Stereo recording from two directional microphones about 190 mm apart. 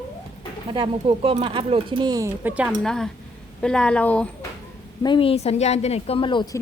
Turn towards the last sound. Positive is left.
turn(degrees=25)  # may be behind; listen again after turning